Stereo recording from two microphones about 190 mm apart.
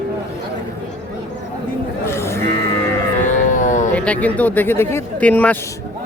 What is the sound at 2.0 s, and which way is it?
Livestock, 15° left (ahead or behind).